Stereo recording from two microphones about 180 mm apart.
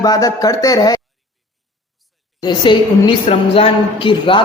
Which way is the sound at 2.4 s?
25° left (ahead or behind).